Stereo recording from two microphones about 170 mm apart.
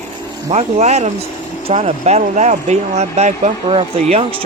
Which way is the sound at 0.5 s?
40° right (ahead or behind).